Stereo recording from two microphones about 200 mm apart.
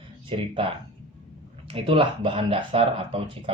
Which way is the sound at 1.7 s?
25° right (ahead or behind).